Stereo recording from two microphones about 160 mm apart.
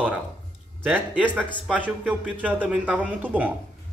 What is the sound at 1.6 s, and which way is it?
Speech, 5° right (ahead or behind).